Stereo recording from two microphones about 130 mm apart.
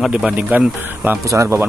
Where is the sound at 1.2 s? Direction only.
20° right (ahead or behind).